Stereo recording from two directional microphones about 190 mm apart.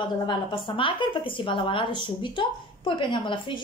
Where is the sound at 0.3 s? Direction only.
25° left (ahead or behind).